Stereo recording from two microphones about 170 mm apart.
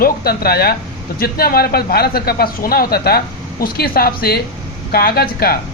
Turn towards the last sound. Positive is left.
turn(degrees=65)  # may be behind; listen again after turning